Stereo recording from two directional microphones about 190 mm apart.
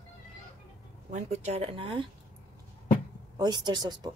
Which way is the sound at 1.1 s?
35° right (ahead or behind).